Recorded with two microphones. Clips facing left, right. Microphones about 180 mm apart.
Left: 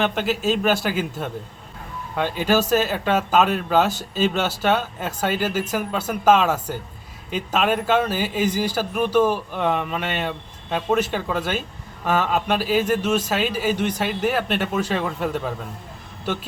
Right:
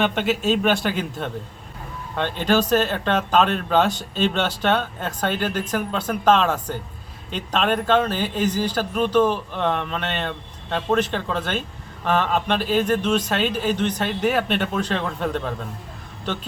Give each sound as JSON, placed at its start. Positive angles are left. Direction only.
{"t": 0.0, "sound": "a man's voice", "side_deg": 0}